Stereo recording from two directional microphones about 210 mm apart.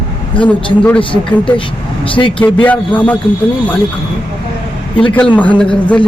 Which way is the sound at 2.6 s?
5° left (ahead or behind).